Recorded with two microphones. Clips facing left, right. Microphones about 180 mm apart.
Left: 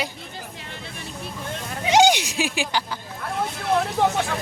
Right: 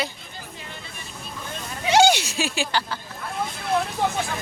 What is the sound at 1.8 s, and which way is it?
Speech, 15° left (ahead or behind).